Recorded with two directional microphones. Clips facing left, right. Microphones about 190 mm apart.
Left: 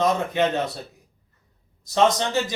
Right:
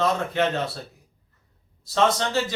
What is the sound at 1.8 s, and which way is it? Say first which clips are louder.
Speech: left 2 dB; 15° left (ahead or behind).